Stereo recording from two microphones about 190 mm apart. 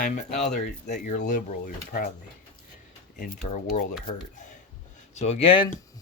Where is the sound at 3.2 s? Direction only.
40° left (ahead or behind).